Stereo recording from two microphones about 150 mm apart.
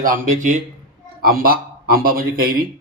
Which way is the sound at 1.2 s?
80° right.